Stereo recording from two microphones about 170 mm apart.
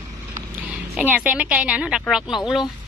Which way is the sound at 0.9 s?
10° right (ahead or behind).